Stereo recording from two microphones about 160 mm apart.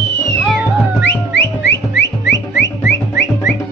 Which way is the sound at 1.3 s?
90° left.